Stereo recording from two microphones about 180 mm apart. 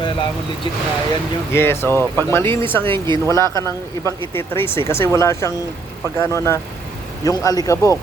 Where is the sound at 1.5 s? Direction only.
15° left (ahead or behind).